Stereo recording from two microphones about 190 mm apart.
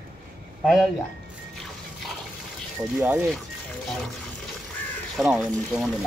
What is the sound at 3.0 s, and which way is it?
Speech, 5° right (ahead or behind).